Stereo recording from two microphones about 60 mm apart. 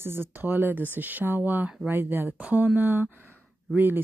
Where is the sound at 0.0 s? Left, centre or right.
Right.